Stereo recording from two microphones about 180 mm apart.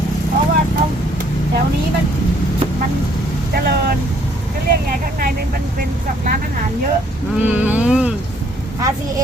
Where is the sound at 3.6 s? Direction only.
60° right (ahead or behind).